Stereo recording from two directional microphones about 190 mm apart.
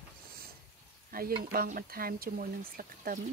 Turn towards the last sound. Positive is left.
turn(degrees=-50)  # may be behind; listen again after turning